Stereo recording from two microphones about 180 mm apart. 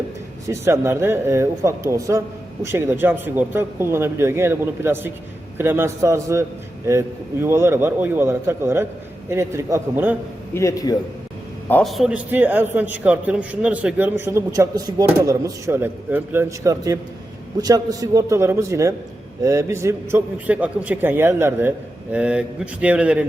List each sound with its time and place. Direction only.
0.4 s a man's voice: 15° right (ahead or behind)
10.5 s a man's voice: 15° left (ahead or behind)
11.7 s a man's voice: centre (ahead or behind)